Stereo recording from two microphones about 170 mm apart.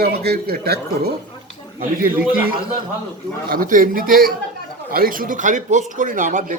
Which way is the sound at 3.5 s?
55° right (ahead or behind).